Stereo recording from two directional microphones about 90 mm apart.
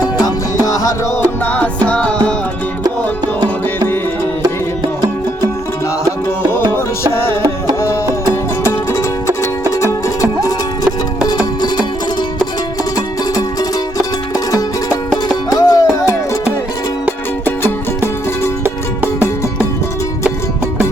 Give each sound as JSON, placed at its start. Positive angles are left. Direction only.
{"t": 0.6, "sound": "music", "side_deg": 40}
{"t": 1.5, "sound": "music", "side_deg": 15}
{"t": 6.7, "sound": "music", "side_deg": 25}
{"t": 11.3, "sound": "music", "side_deg": 50}
{"t": 15.4, "sound": "music", "side_deg": 45}